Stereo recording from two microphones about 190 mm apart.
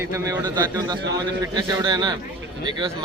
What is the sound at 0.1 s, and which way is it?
Speech, 15° right (ahead or behind).